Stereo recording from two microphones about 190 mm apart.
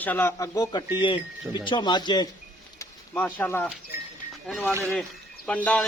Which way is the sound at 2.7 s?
10° left (ahead or behind).